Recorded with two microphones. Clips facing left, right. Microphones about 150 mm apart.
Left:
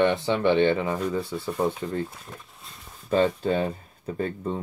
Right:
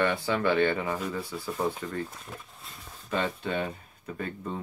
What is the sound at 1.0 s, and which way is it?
Speech, centre (ahead or behind).